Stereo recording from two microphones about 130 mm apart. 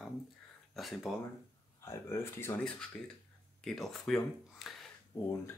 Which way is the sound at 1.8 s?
20° left (ahead or behind).